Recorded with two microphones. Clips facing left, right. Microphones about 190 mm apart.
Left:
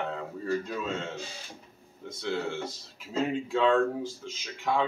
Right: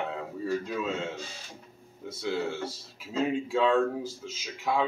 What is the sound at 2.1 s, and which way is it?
Speech, 5° right (ahead or behind).